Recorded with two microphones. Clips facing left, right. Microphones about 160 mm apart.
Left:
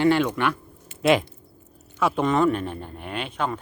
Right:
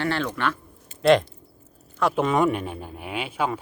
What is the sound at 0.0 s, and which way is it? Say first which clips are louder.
Speech: left 5 dB; 15° left (ahead or behind).